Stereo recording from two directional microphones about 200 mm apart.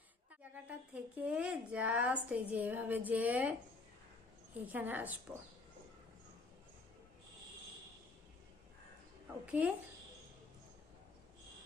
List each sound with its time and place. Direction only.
0.5 s a woman's voice: 5° right (ahead or behind)
4.6 s a woman's voice: 10° right (ahead or behind)
9.5 s a woman's voice: 5° right (ahead or behind)